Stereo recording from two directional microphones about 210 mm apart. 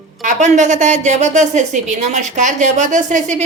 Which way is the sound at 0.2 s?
35° right (ahead or behind).